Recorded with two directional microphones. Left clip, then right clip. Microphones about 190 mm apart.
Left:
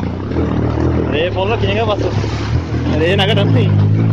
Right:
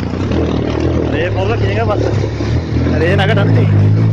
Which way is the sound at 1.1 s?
30° left (ahead or behind).